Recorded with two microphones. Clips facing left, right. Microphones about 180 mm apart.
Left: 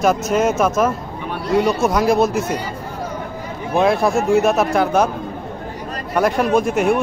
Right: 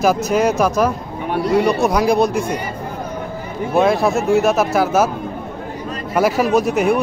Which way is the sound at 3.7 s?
Centre (ahead or behind).